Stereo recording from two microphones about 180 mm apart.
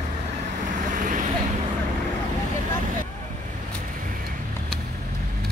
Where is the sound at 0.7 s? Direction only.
45° right (ahead or behind).